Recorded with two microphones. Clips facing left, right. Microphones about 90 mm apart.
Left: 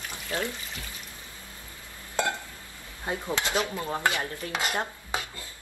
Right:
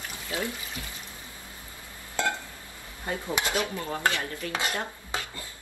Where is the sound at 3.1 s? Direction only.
20° left (ahead or behind).